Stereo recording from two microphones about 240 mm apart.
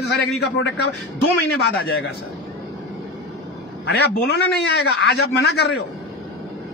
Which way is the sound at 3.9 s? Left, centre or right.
Left.